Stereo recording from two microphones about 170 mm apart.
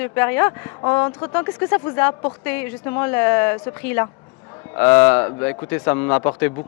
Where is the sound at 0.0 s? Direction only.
15° left (ahead or behind).